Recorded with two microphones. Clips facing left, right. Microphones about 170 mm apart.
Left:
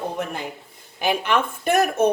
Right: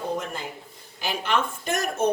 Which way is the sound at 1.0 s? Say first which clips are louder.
Left 5 dB; 55° left (ahead or behind).